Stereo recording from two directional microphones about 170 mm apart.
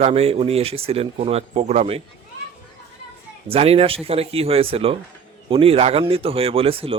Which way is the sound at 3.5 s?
35° right (ahead or behind).